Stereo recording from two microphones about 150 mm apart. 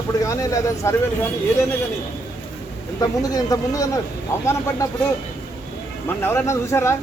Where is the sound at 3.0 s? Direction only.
25° left (ahead or behind).